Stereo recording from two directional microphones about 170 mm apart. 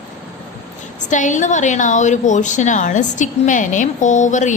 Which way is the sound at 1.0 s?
45° left (ahead or behind).